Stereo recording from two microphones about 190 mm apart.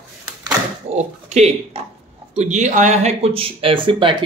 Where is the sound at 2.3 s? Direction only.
40° right (ahead or behind).